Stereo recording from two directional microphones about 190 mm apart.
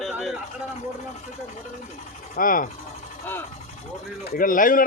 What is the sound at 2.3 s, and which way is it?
Speech, 45° left (ahead or behind).